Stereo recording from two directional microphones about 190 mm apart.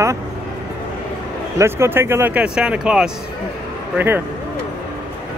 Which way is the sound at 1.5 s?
15° right (ahead or behind).